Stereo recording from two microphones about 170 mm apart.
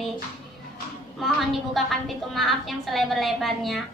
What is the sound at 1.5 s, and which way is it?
A woman's voice, centre (ahead or behind).